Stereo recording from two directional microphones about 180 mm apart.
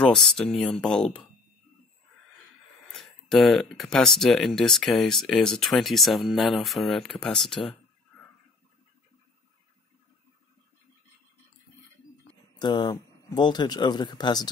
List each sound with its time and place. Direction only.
0.0 s speech: 5° left (ahead or behind)
2.9 s speech: centre (ahead or behind)
12.5 s speech: 25° left (ahead or behind)